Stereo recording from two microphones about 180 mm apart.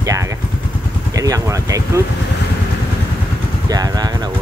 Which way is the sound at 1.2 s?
20° right (ahead or behind).